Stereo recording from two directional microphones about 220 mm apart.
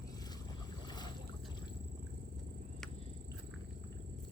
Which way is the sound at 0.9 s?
20° left (ahead or behind).